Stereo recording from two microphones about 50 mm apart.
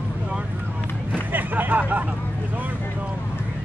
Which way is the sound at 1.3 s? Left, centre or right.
Right.